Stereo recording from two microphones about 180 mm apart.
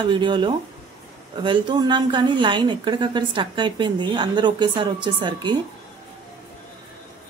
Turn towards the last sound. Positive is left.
turn(degrees=-25)  # may be behind; listen again after turning